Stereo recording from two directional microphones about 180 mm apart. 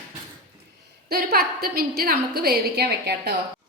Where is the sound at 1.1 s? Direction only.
55° right (ahead or behind).